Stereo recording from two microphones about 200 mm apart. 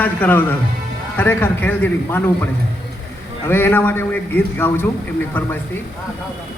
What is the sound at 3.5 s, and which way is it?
A man's voice, 10° left (ahead or behind).